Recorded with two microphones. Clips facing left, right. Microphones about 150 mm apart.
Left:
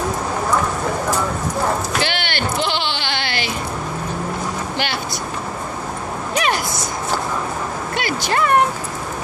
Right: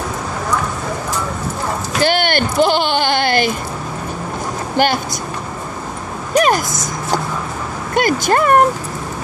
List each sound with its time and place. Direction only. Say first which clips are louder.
2.0 s bleat: right 7 dB; 45° right (ahead or behind)
6.3 s a sound: right 7 dB; 45° right (ahead or behind)
7.9 s speech: right 8 dB; 45° right (ahead or behind)